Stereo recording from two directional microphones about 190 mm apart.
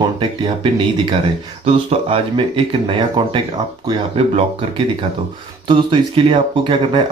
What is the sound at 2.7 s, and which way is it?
Speech, 25° right (ahead or behind).